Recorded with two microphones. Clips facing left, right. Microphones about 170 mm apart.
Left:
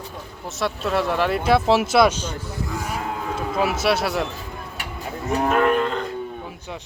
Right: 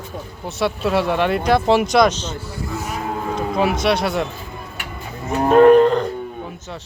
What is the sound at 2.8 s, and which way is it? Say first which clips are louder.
Cattle: right 2 dB; 10° left (ahead or behind).